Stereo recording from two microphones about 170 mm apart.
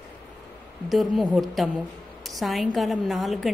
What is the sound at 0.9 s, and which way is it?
A woman's voice, centre (ahead or behind).